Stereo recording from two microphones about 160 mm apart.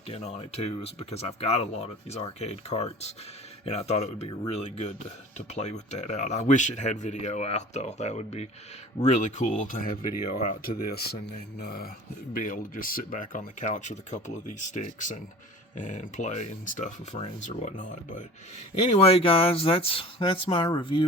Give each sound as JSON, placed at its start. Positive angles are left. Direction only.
{"t": 0.1, "sound": "speech", "side_deg": 40}
{"t": 11.6, "sound": "a sound", "side_deg": 70}
{"t": 12.3, "sound": "speech", "side_deg": 60}
{"t": 18.9, "sound": "speech", "side_deg": 40}